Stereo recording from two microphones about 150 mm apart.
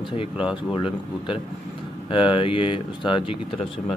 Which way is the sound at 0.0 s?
35° left (ahead or behind).